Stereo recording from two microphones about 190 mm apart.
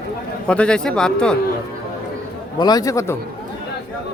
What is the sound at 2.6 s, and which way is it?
Speech, 20° left (ahead or behind).